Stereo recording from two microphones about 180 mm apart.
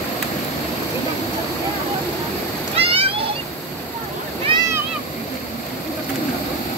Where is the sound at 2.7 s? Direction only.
30° right (ahead or behind).